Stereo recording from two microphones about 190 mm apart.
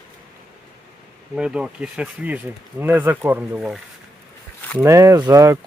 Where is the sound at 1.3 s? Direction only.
5° right (ahead or behind).